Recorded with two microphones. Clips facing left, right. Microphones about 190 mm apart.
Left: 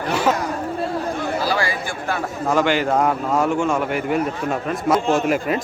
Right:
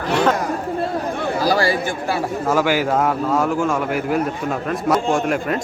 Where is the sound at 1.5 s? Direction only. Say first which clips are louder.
Right 7 dB; 40° right (ahead or behind).